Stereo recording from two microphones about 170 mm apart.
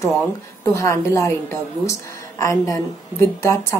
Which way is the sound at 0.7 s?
15° left (ahead or behind).